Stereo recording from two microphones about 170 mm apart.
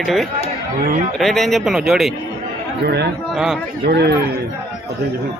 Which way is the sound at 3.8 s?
70° right (ahead or behind).